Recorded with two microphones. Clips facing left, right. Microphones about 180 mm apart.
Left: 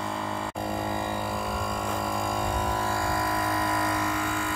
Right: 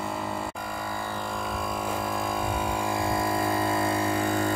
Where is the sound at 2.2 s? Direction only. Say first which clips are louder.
Even; 5° right (ahead or behind).